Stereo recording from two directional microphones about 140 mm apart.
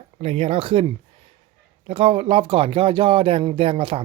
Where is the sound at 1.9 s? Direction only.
45° right (ahead or behind).